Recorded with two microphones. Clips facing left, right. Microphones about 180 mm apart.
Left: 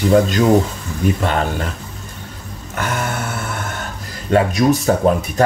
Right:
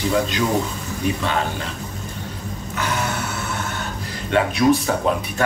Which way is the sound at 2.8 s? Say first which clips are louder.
Left 2 dB; 50° left (ahead or behind).